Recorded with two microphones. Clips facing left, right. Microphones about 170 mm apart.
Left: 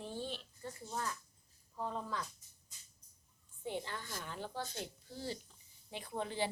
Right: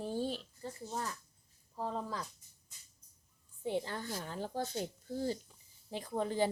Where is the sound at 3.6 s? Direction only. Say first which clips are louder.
Right 5 dB; 40° right (ahead or behind).